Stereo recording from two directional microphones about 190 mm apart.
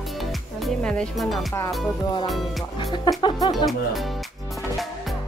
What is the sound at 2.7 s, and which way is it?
Speech, 25° left (ahead or behind).